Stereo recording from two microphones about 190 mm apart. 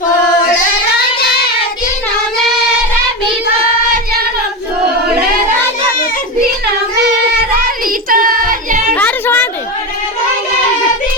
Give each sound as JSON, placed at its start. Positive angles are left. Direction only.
{"t": 0.9, "sound": "child singing", "side_deg": 55}
{"t": 8.1, "sound": "singing", "side_deg": -45}
{"t": 9.0, "sound": "a sound", "side_deg": 10}